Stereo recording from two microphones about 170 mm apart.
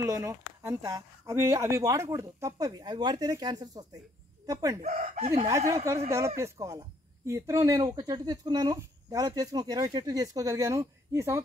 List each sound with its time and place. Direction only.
0.0 s speech: 15° right (ahead or behind)
4.8 s speech: 40° right (ahead or behind)
6.0 s speech: 15° right (ahead or behind)